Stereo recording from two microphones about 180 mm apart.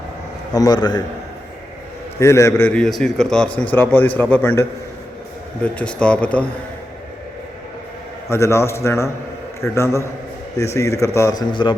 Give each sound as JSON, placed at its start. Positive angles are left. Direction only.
{"t": 0.5, "sound": "a man's voice", "side_deg": 20}
{"t": 2.1, "sound": "a man's voice", "side_deg": 15}
{"t": 5.6, "sound": "a man's voice", "side_deg": 5}
{"t": 8.3, "sound": "a man's voice", "side_deg": 15}